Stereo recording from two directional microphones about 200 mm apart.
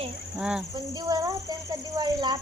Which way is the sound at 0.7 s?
20° right (ahead or behind).